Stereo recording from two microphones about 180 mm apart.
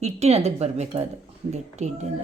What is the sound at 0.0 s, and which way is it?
Speech, 35° right (ahead or behind).